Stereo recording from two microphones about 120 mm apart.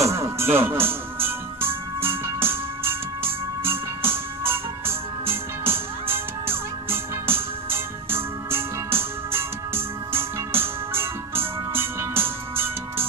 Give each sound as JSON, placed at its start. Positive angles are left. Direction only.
{"t": 0.0, "sound": "music", "side_deg": -25}
{"t": 6.1, "sound": "music", "side_deg": -20}